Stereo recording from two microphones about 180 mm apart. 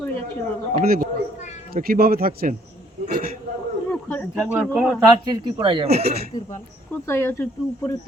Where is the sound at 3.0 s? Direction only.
40° right (ahead or behind).